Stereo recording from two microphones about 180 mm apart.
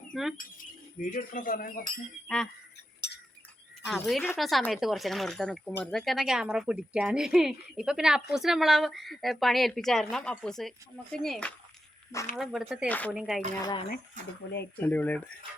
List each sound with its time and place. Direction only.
0.1 s speech: centre (ahead or behind)
1.1 s speech: 50° left (ahead or behind)
2.2 s speech: centre (ahead or behind)
3.8 s speech: centre (ahead or behind)
13.6 s speech: 25° left (ahead or behind)
14.8 s speech: 10° left (ahead or behind)